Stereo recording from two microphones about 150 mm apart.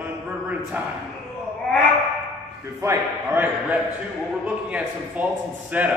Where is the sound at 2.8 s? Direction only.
15° right (ahead or behind).